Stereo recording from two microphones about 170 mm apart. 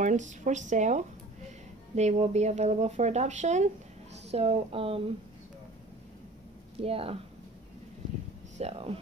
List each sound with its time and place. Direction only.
0.0 s speech: 45° right (ahead or behind)
6.8 s speech: 35° right (ahead or behind)
8.5 s speech: 35° right (ahead or behind)